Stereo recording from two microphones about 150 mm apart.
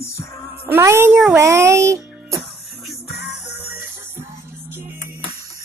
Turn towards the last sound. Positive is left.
turn(degrees=-15)  # may be behind; listen again after turning